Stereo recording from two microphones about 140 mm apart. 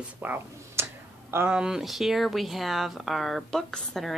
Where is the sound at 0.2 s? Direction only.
15° right (ahead or behind).